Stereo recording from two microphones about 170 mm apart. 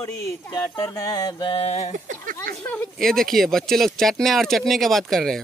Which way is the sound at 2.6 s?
10° left (ahead or behind).